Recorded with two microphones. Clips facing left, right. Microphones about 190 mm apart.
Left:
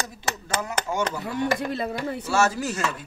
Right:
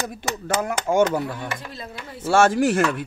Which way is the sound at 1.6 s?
60° left (ahead or behind).